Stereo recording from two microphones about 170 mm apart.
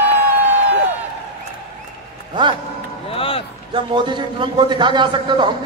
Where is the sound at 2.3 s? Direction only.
30° right (ahead or behind).